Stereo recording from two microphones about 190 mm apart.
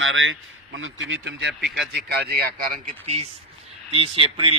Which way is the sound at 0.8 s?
75° right (ahead or behind).